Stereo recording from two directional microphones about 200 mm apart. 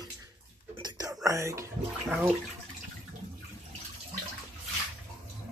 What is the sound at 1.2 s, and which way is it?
Speech, 15° right (ahead or behind).